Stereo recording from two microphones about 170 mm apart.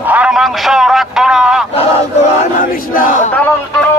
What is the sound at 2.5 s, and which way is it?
Battle cry, 50° left (ahead or behind).